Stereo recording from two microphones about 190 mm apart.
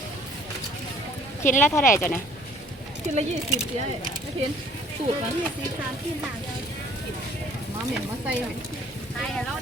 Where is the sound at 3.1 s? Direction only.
40° right (ahead or behind).